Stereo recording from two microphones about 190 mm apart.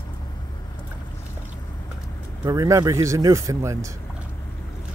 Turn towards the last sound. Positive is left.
turn(degrees=-15)  # may be behind; listen again after turning